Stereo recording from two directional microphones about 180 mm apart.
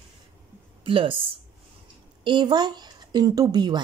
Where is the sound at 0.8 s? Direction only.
30° right (ahead or behind).